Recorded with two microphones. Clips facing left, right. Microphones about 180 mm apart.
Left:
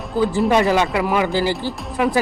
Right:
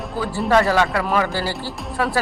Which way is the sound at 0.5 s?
20° left (ahead or behind).